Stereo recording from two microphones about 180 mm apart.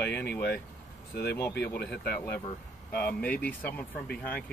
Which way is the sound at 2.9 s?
10° left (ahead or behind).